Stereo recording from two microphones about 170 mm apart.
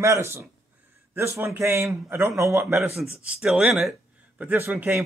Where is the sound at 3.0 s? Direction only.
5° right (ahead or behind).